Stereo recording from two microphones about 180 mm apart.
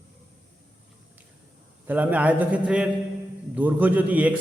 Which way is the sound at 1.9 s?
10° right (ahead or behind).